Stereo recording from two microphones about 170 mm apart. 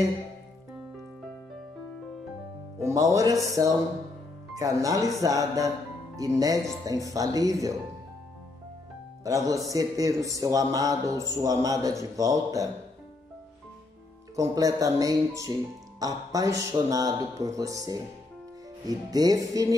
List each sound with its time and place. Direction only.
2.8 s speech: 20° right (ahead or behind)
9.2 s speech: 20° right (ahead or behind)
14.3 s speech: 20° right (ahead or behind)